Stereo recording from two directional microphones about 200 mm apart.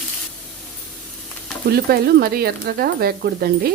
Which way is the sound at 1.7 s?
50° right (ahead or behind).